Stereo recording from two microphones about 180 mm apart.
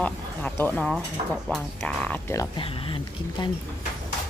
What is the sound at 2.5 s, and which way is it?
Speech, 30° left (ahead or behind).